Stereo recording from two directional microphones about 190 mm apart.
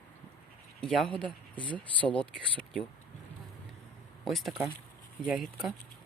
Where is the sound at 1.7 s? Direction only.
25° left (ahead or behind).